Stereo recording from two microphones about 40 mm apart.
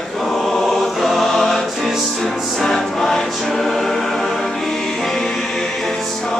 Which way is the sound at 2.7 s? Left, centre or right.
Centre.